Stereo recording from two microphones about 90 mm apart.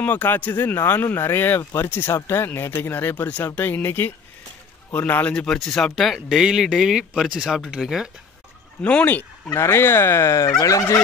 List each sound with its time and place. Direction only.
0.0 s speech: 20° left (ahead or behind)
1.6 s fowl: 35° left (ahead or behind)
2.2 s speech: 25° left (ahead or behind); by 8.1 s 5° right (ahead or behind)
8.8 s speech: 15° left (ahead or behind)
9.6 s speech: 30° left (ahead or behind)
10.6 s fowl: 40° left (ahead or behind)